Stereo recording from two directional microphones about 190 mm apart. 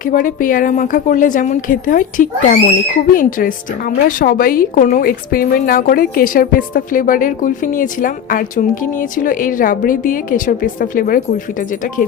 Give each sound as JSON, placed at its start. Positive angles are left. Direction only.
{"t": 0.0, "sound": "speech", "side_deg": 45}